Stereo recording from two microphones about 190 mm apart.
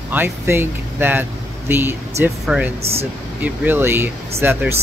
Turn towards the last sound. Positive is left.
turn(degrees=-10)  # may be behind; listen again after turning